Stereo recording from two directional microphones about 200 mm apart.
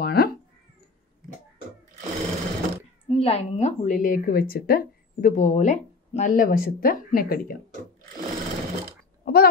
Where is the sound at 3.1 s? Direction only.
30° left (ahead or behind); by 7.6 s 45° left (ahead or behind).